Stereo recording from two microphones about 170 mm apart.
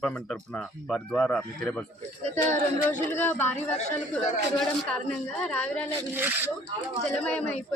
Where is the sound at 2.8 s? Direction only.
10° left (ahead or behind).